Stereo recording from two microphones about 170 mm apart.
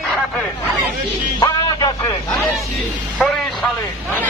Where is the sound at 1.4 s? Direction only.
25° left (ahead or behind).